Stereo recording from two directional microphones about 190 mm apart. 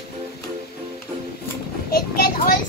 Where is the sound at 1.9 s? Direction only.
50° left (ahead or behind).